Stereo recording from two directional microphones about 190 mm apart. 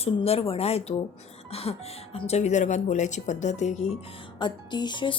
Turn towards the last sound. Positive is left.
turn(degrees=25)  # may be behind; listen again after turning